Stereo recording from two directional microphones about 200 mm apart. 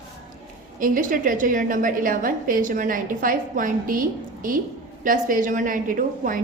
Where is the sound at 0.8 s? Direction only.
45° right (ahead or behind).